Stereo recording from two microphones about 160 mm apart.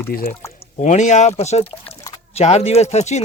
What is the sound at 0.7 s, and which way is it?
Speech, 45° left (ahead or behind).